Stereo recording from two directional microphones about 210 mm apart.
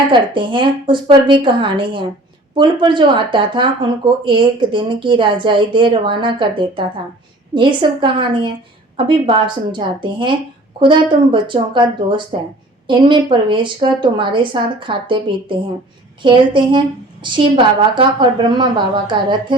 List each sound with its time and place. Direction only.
0.1 s speech: 25° right (ahead or behind)